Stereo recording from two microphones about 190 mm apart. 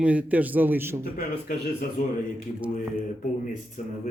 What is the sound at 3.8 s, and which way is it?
Speech, 45° left (ahead or behind).